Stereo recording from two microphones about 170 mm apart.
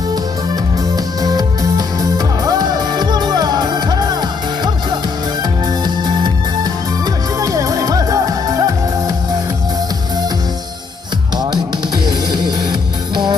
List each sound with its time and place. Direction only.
0.9 s music: 20° right (ahead or behind)
12.0 s music: 25° right (ahead or behind)